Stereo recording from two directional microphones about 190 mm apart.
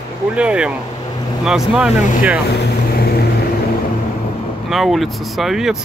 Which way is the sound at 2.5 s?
55° left (ahead or behind).